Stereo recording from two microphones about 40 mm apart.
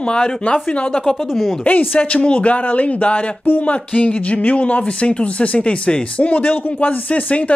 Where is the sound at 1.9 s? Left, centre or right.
Left.